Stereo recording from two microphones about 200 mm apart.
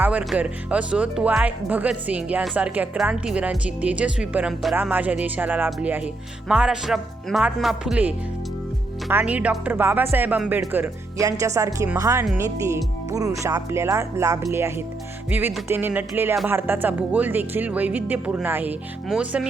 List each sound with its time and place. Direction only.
0.0 s speech: 5° right (ahead or behind)